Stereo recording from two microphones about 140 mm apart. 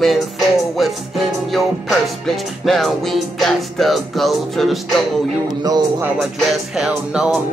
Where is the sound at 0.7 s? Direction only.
Centre (ahead or behind).